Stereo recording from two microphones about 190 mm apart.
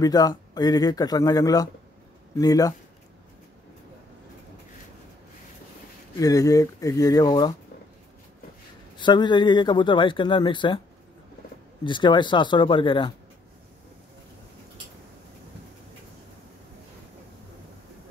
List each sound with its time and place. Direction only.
0.0 s speech: 20° left (ahead or behind)
6.1 s speech: 20° left (ahead or behind)
8.9 s speech: 25° left (ahead or behind)
11.8 s speech: 25° left (ahead or behind)